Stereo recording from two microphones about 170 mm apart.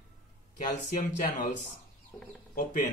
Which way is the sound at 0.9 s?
50° left (ahead or behind).